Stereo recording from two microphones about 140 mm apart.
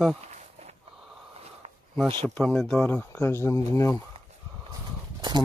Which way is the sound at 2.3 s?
5° left (ahead or behind).